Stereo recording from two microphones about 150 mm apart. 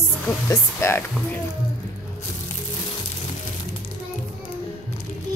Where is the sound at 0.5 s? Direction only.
15° left (ahead or behind).